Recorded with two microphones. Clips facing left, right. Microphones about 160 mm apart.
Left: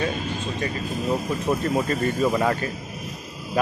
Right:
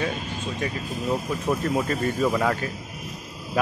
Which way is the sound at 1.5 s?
5° left (ahead or behind).